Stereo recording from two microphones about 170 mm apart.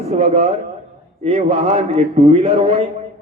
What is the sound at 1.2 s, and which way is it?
A man's voice, 35° right (ahead or behind).